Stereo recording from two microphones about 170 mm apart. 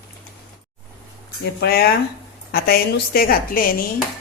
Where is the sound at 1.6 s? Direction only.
70° left (ahead or behind).